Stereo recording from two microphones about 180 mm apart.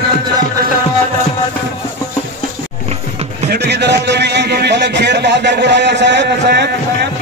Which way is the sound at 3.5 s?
70° right (ahead or behind).